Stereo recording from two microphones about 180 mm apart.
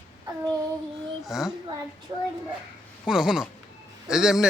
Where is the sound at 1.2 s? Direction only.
Centre (ahead or behind).